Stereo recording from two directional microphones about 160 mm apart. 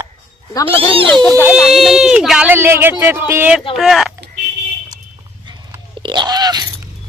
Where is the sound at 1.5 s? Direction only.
Centre (ahead or behind).